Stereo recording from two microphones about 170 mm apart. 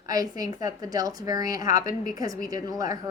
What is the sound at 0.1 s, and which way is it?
A woman's voice, 20° right (ahead or behind).